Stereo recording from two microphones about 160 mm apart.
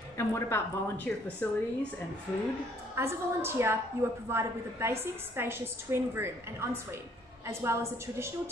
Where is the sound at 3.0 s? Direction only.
15° right (ahead or behind).